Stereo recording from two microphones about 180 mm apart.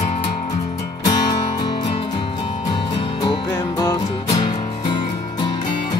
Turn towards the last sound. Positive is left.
turn(degrees=25)  # may be behind; listen again after turning